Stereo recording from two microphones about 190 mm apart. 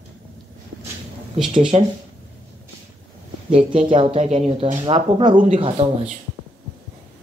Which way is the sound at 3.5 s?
30° right (ahead or behind).